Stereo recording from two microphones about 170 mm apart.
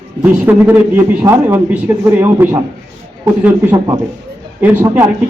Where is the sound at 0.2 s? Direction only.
10° right (ahead or behind).